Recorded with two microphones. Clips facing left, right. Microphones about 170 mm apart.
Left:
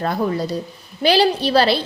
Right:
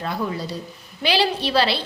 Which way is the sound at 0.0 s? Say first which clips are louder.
Left 6 dB; 45° left (ahead or behind).